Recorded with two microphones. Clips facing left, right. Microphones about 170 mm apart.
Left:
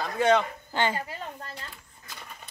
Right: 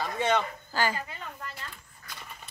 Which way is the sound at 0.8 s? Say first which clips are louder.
Left 2 dB; 25° left (ahead or behind).